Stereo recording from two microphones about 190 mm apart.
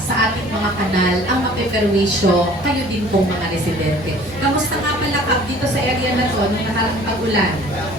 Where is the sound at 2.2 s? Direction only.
55° right (ahead or behind).